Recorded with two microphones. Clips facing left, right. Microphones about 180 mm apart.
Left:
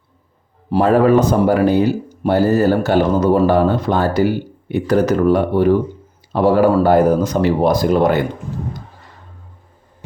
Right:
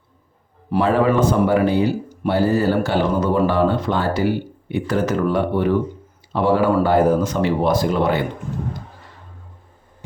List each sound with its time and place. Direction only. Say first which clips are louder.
0.7 s speech: left 5 dB; 40° left (ahead or behind)